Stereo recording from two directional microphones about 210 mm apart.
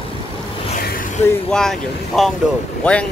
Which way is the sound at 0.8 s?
45° left (ahead or behind).